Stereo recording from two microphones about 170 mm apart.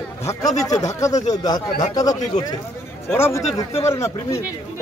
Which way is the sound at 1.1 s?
40° left (ahead or behind).